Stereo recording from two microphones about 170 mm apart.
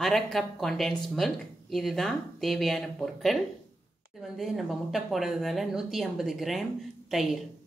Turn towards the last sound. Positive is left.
turn(degrees=0)  # may be behind; listen again after turning